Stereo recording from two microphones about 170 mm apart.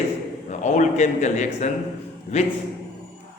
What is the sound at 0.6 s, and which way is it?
A man's voice, 45° left (ahead or behind).